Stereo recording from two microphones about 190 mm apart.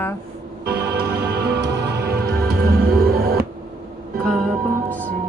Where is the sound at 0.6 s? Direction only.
60° right (ahead or behind).